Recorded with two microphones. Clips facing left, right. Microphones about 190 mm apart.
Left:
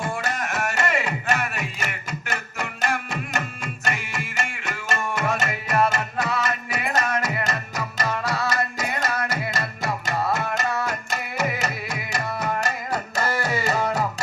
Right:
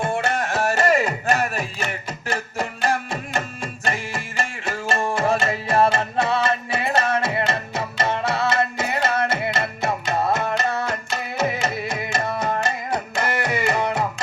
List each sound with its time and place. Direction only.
0.0 s music: 25° right (ahead or behind)